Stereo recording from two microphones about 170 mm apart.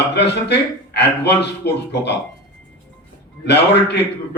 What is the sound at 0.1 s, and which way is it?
A man's voice, 80° left.